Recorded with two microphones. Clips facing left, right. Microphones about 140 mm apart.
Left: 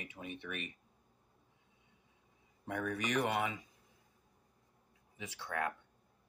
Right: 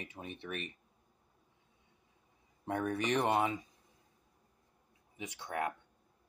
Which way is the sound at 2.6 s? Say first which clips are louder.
Right 4 dB; 30° right (ahead or behind).